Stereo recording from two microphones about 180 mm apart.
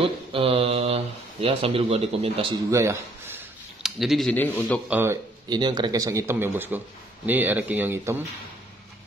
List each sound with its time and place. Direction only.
0.0 s speech: 30° right (ahead or behind)
2.7 s speech: 15° right (ahead or behind)
3.8 s speech: centre (ahead or behind)
4.8 s speech: 10° right (ahead or behind)